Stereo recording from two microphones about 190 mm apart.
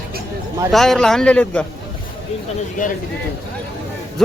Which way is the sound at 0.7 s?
Centre (ahead or behind).